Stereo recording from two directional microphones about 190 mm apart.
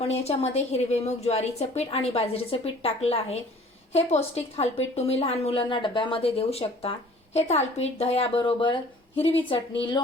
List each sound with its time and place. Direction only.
0.0 s a woman's voice: 35° left (ahead or behind)